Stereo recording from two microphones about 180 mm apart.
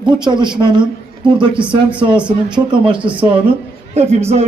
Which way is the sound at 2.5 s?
25° right (ahead or behind).